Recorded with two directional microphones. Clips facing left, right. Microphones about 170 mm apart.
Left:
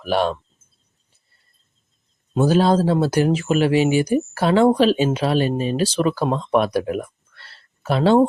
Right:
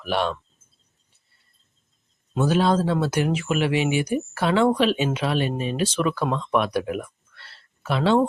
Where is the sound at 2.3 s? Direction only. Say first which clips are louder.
Left 4 dB; 35° left (ahead or behind).